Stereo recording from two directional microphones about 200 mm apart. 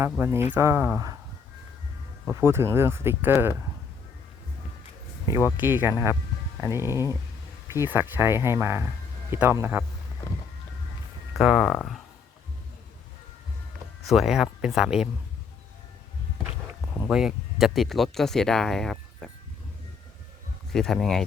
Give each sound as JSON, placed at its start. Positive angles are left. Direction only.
{"t": 0.0, "sound": "speech", "side_deg": -10}
{"t": 2.2, "sound": "speech", "side_deg": -10}
{"t": 5.5, "sound": "speech", "side_deg": -10}
{"t": 6.8, "sound": "speech", "side_deg": 15}
{"t": 7.7, "sound": "speech", "side_deg": -10}
{"t": 11.3, "sound": "speech", "side_deg": 0}
{"t": 14.1, "sound": "speech", "side_deg": 0}
{"t": 17.0, "sound": "speech", "side_deg": -5}
{"t": 20.7, "sound": "speech", "side_deg": 0}